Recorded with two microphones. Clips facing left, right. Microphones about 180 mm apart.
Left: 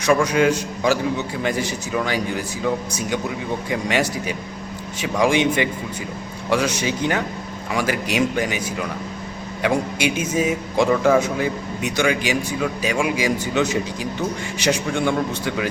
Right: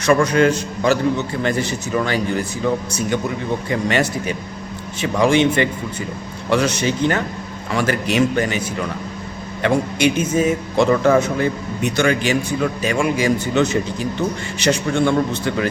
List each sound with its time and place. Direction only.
0.0 s a man's voice: 10° left (ahead or behind)